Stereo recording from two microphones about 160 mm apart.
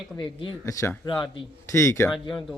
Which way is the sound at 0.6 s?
20° left (ahead or behind).